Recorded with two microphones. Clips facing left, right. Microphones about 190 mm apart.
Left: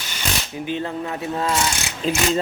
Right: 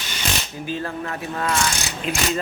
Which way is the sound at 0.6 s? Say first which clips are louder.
Left 3 dB; 20° left (ahead or behind).